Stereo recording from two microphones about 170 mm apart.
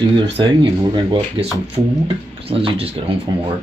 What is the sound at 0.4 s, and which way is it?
Speech, 30° right (ahead or behind).